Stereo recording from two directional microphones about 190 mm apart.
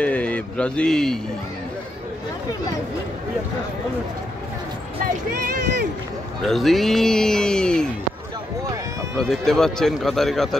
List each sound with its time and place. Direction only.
0.0 s speech: 5° left (ahead or behind)
5.0 s speech: 50° right (ahead or behind)
6.4 s a man's voice: centre (ahead or behind)
9.1 s a man's voice: centre (ahead or behind)